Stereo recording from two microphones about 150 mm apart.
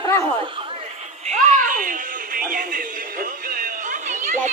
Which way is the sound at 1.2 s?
50° right (ahead or behind).